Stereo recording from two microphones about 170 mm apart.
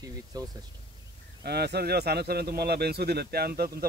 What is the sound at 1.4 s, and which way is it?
Speech, 75° right (ahead or behind).